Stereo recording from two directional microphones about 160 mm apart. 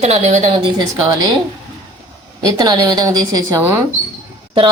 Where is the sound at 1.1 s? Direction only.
25° right (ahead or behind).